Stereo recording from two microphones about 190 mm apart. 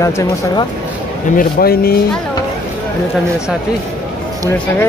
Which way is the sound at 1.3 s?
50° left (ahead or behind).